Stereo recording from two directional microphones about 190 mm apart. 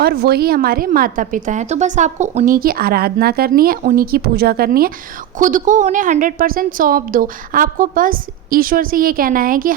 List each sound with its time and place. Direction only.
0.0 s a woman's voice: 55° right (ahead or behind)